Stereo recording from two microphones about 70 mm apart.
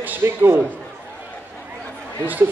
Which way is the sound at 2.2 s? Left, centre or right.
Right.